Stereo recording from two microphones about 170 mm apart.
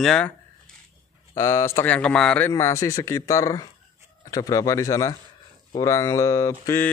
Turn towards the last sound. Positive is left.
turn(degrees=15)  # may be behind; listen again after turning